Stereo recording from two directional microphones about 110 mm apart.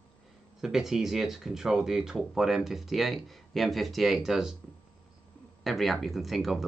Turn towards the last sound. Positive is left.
turn(degrees=0)  # may be behind; listen again after turning